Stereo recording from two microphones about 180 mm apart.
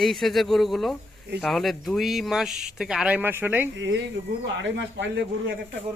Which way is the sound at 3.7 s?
85° right.